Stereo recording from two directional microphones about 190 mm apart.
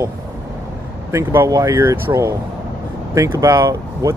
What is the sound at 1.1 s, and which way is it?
Speech, 15° right (ahead or behind).